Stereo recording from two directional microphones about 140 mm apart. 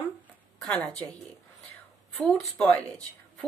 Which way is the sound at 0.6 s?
10° left (ahead or behind).